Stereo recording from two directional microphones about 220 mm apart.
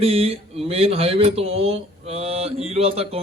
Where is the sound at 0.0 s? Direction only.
25° right (ahead or behind).